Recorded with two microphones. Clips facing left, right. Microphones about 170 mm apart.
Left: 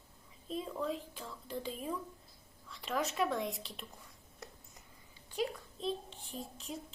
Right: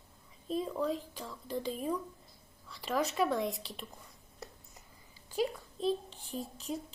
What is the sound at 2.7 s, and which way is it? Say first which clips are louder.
Speech: right 3 dB; centre (ahead or behind).